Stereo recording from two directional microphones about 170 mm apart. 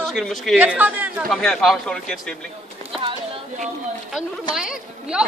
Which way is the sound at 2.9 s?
30° right (ahead or behind).